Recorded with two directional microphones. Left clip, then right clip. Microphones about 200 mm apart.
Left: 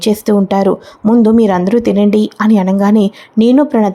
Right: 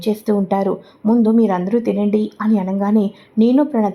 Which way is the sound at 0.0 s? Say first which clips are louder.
Left 6 dB; 30° left (ahead or behind).